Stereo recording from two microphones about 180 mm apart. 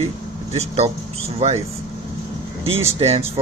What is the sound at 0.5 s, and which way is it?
Speech, 35° right (ahead or behind).